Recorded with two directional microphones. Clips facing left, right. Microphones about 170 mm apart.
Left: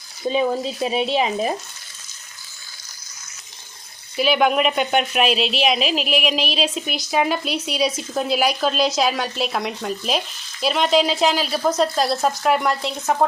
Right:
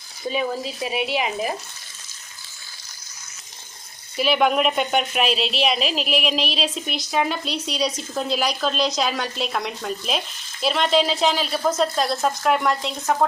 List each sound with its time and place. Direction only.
0.3 s speech: 25° left (ahead or behind)
4.2 s speech: centre (ahead or behind)